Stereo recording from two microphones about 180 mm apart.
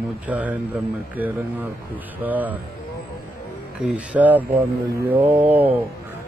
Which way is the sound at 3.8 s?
10° right (ahead or behind).